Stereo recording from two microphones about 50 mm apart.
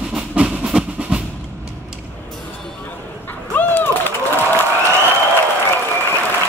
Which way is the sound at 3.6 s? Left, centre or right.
Left.